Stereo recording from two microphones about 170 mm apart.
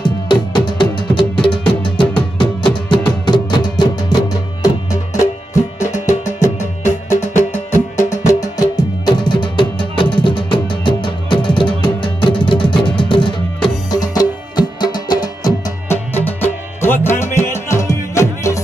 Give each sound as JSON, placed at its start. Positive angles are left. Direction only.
{"t": 0.0, "sound": "music", "side_deg": 25}
{"t": 5.2, "sound": "music", "side_deg": 20}